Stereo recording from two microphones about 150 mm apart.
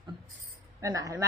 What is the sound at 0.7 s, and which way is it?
Speech, 20° right (ahead or behind).